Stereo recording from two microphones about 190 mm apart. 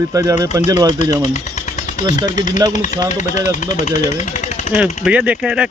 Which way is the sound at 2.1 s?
40° left (ahead or behind).